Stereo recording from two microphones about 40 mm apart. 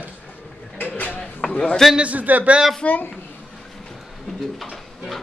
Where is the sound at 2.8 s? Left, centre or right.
Left.